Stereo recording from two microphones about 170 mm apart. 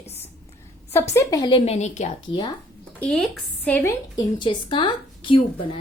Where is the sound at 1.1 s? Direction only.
20° left (ahead or behind); by 2.1 s 45° left (ahead or behind).